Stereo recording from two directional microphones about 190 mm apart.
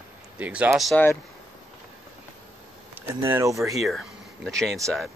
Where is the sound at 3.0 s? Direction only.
15° right (ahead or behind).